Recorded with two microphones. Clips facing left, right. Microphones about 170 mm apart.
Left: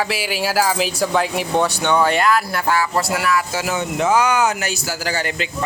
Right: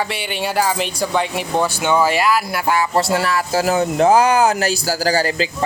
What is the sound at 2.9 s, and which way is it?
Speech, 30° right (ahead or behind).